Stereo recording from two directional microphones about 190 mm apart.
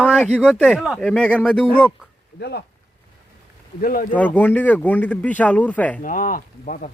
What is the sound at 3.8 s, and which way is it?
Speech, 50° left (ahead or behind).